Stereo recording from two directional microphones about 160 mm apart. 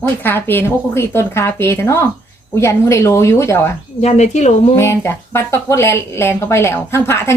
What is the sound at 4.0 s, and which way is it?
Speech, 45° left (ahead or behind).